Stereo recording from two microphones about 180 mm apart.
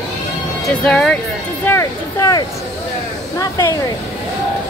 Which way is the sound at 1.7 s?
15° left (ahead or behind).